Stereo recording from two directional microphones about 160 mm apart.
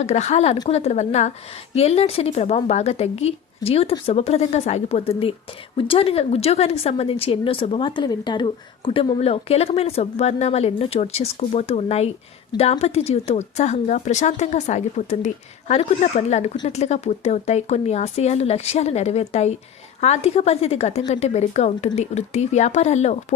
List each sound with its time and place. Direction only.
0.0 s a woman's voice: 45° left (ahead or behind)